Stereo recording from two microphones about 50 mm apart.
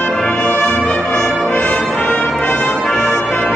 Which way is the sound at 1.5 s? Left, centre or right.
Left.